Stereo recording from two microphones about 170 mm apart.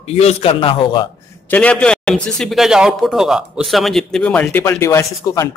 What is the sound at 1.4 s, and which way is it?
A man's voice, 10° left (ahead or behind).